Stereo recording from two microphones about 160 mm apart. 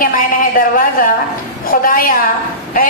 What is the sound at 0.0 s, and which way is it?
A woman's voice, 60° left (ahead or behind).